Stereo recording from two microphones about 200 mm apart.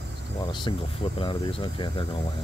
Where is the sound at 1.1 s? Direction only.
25° left (ahead or behind).